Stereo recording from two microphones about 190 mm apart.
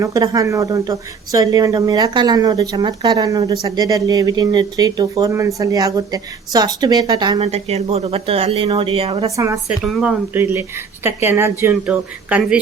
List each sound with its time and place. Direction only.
0.0 s a woman's voice: 15° right (ahead or behind)
7.3 s speech: 35° right (ahead or behind)
9.2 s speech: 15° right (ahead or behind)
9.6 s speech: centre (ahead or behind)